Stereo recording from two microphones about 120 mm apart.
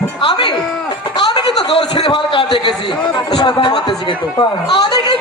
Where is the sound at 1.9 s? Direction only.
50° left (ahead or behind).